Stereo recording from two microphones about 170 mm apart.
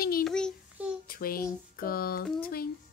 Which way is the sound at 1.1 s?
60° left (ahead or behind).